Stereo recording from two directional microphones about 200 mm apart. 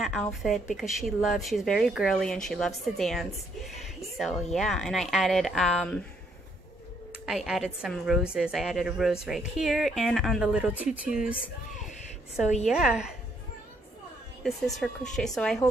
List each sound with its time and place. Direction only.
0.0 s a woman's voice: centre (ahead or behind)
7.2 s a woman's voice: centre (ahead or behind)
12.6 s a woman's voice: 5° right (ahead or behind)
14.8 s a woman's voice: 5° left (ahead or behind)